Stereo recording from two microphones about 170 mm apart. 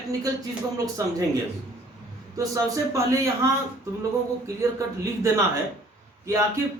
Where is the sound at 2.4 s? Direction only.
20° right (ahead or behind).